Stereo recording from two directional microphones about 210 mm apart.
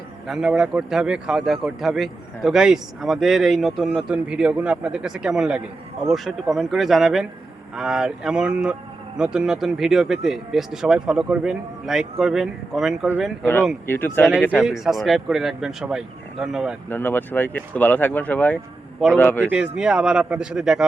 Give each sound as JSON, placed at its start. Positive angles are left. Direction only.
{"t": 0.3, "sound": "speech", "side_deg": 0}
{"t": 13.4, "sound": "speech", "side_deg": 10}
{"t": 14.6, "sound": "speech", "side_deg": 0}
{"t": 16.9, "sound": "speech", "side_deg": 10}
{"t": 19.5, "sound": "speech", "side_deg": -5}